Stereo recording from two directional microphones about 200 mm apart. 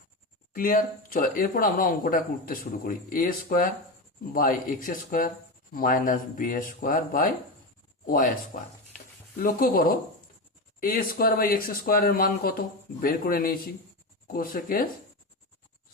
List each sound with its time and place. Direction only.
0.5 s speech: 45° left (ahead or behind)